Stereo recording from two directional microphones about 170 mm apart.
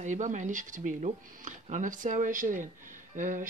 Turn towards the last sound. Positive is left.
turn(degrees=-50)  # may be behind; listen again after turning